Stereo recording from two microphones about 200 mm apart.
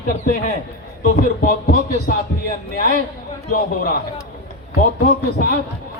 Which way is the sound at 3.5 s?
50° left (ahead or behind).